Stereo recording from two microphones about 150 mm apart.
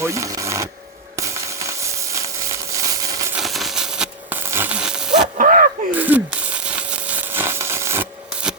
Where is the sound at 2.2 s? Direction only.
20° right (ahead or behind).